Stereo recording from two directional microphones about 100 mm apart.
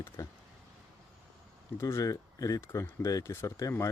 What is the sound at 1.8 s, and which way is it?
Speech, 30° left (ahead or behind).